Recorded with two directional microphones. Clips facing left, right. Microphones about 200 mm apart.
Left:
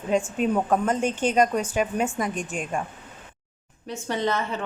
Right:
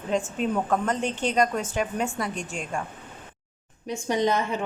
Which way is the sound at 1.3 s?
15° left (ahead or behind).